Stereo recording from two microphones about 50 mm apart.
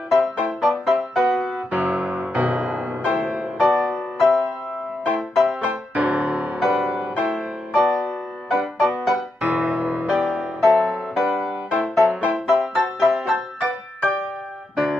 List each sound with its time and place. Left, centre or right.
0.1 s music: centre
1.7 s music: right
5.7 s music: right
6.6 s music: centre
9.4 s music: right
10.0 s music: centre
12.0 s music: right
12.4 s music: centre